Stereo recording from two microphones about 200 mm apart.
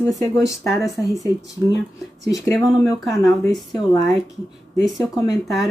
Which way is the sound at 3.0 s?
Centre (ahead or behind).